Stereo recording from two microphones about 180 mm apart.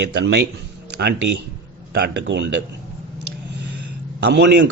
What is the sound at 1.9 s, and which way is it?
Speech, 70° right (ahead or behind).